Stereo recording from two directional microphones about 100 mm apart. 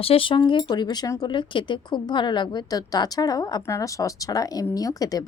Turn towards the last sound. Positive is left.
turn(degrees=35)  # may be behind; listen again after turning